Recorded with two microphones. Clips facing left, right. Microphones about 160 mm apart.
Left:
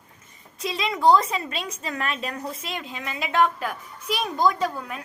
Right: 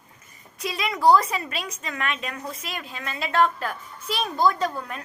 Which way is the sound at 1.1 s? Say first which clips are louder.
Even; 25° left (ahead or behind).